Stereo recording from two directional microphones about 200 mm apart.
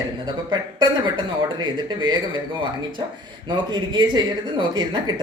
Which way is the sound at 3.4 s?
20° right (ahead or behind).